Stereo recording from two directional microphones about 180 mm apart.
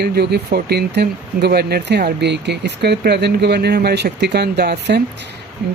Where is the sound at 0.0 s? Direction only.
65° right (ahead or behind).